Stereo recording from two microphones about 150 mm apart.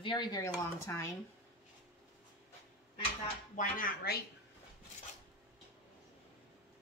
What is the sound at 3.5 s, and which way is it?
Speech, 65° left (ahead or behind).